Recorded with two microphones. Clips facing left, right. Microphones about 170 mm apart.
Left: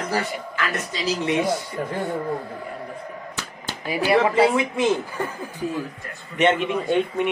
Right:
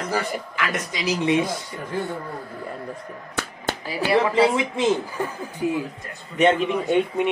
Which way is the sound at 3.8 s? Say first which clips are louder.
Left 4 dB; 15° left (ahead or behind).